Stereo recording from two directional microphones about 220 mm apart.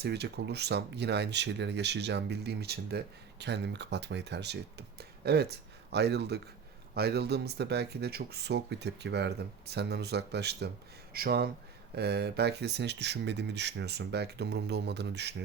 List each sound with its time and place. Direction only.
0.0 s speech: 50° right (ahead or behind)